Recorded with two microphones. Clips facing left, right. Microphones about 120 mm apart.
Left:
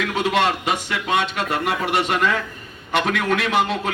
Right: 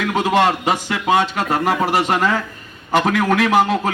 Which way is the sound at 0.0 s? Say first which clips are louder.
Right 4 dB; 40° right (ahead or behind).